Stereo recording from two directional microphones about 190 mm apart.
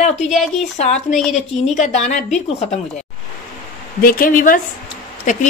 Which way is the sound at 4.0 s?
50° left (ahead or behind).